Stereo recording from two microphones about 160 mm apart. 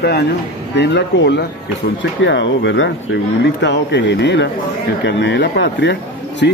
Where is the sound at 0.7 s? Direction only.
90° left.